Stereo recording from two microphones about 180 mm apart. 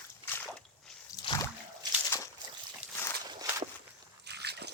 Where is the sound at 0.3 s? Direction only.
10° left (ahead or behind).